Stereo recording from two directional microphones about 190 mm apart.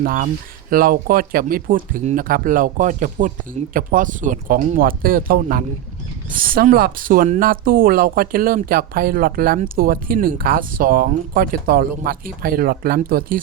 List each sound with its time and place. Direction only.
0.0 s speech: 50° right (ahead or behind)